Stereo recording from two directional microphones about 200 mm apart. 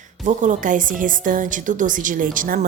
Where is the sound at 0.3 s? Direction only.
40° right (ahead or behind).